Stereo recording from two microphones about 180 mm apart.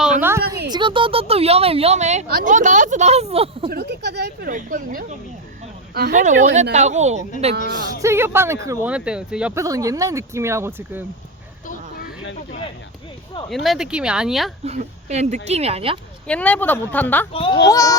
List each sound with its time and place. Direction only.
0.2 s a sound: 15° right (ahead or behind)
0.7 s speech: 25° right (ahead or behind)
3.7 s speech: 60° right (ahead or behind); by 7.2 s 40° right (ahead or behind)
7.5 s speech: 65° right (ahead or behind)
8.0 s speech: 15° right (ahead or behind)
8.9 s speech: 5° right (ahead or behind)
9.6 s speech: 20° right (ahead or behind)
13.5 s speech: centre (ahead or behind)
14.6 s speech: 40° right (ahead or behind)
16.2 s speech: 5° left (ahead or behind)
17.3 s a child's voice: 30° left (ahead or behind)
17.7 s speech: 20° left (ahead or behind)